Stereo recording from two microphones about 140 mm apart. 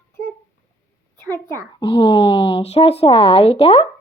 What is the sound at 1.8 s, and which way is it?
Speech, 40° left (ahead or behind).